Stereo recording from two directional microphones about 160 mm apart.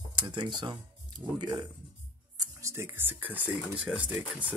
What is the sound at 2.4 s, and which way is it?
Speech, 15° right (ahead or behind).